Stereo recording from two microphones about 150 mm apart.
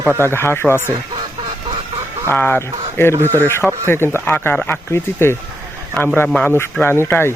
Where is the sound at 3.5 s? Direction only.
15° left (ahead or behind).